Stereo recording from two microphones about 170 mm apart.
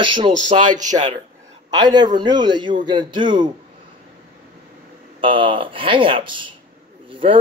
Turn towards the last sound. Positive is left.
turn(degrees=-30)  # may be behind; listen again after turning